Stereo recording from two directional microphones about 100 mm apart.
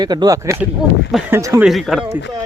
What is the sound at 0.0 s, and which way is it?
Speech, 45° right (ahead or behind).